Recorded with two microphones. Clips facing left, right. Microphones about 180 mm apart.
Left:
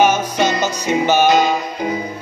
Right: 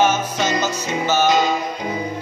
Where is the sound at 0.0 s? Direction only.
15° left (ahead or behind).